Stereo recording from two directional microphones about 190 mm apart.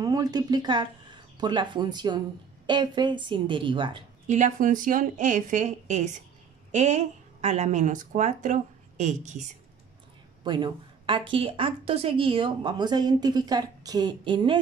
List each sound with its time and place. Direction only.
0.0 s speech: 20° right (ahead or behind)
4.3 s a woman's voice: 40° right (ahead or behind)
10.4 s a woman's voice: 25° right (ahead or behind)